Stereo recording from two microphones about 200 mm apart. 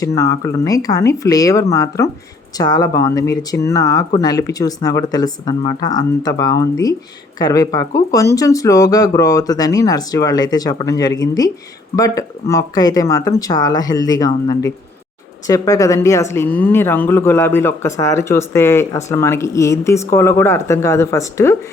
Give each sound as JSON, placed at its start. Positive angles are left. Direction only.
{"t": 0.0, "sound": "speech", "side_deg": 15}